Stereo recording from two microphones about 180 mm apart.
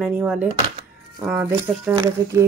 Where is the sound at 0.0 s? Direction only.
5° right (ahead or behind).